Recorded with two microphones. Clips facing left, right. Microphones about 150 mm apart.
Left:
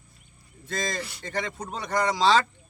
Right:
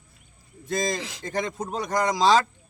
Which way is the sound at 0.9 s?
90° right.